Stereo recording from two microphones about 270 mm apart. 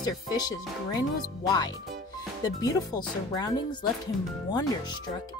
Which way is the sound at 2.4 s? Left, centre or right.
Centre.